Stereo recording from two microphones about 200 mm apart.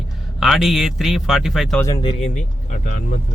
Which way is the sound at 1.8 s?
25° left (ahead or behind).